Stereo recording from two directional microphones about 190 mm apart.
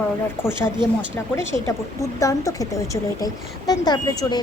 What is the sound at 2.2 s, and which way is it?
A woman's voice, 15° left (ahead or behind).